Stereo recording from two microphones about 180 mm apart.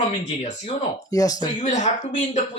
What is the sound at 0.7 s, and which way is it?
Speech, 20° left (ahead or behind).